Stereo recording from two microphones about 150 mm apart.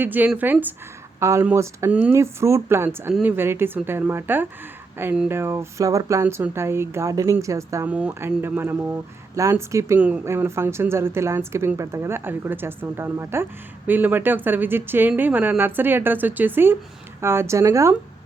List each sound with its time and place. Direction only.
0.0 s speech: 10° right (ahead or behind)